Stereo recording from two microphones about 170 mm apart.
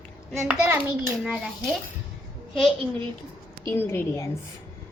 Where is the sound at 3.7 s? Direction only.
15° left (ahead or behind).